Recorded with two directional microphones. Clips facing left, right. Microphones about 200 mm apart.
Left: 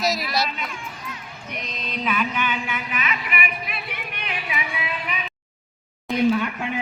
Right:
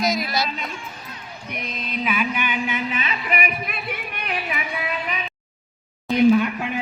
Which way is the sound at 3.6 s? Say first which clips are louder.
Right 3 dB; 45° right (ahead or behind).